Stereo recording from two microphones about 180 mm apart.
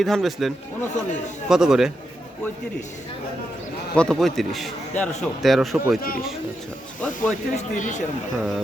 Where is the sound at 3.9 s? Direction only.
5° left (ahead or behind).